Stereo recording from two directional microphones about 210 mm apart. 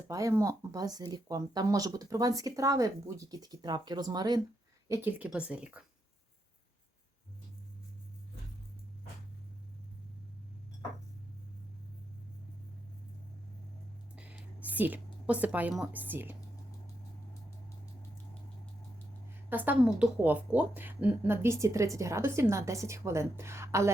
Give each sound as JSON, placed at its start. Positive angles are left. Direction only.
{"t": 0.1, "sound": "speech", "side_deg": -15}
{"t": 4.9, "sound": "speech", "side_deg": -10}
{"t": 14.2, "sound": "a woman's voice", "side_deg": -5}
{"t": 19.3, "sound": "speech", "side_deg": -10}